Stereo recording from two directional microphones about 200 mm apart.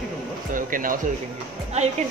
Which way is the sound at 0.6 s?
45° right (ahead or behind).